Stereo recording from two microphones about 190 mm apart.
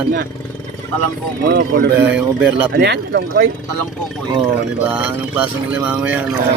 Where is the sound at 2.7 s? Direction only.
60° right (ahead or behind).